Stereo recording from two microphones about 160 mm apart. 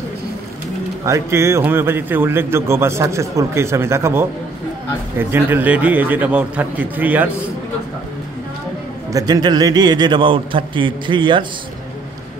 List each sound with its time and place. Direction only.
1.0 s a man's voice: 15° right (ahead or behind)
5.3 s a man's voice: 10° right (ahead or behind)
9.1 s a man's voice: 25° right (ahead or behind)